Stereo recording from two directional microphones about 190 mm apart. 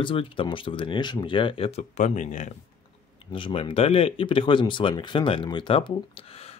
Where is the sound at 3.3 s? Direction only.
30° left (ahead or behind).